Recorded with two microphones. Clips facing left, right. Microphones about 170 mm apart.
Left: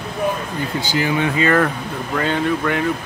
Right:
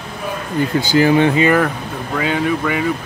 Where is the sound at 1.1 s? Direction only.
30° right (ahead or behind).